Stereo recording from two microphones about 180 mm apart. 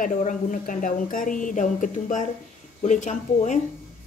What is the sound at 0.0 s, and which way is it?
A woman's voice, 45° left (ahead or behind).